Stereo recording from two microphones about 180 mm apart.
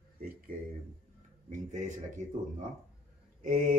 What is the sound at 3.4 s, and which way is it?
Speech, 50° right (ahead or behind).